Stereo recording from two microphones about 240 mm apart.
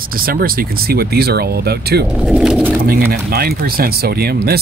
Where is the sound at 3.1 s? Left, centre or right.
Right.